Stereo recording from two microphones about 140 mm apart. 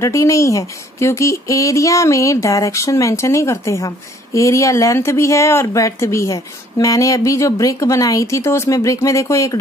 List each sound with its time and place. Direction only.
0.0 s speech: 20° left (ahead or behind)